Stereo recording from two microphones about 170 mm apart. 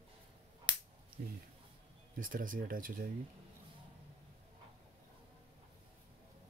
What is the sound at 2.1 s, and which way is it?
Speech, 50° right (ahead or behind).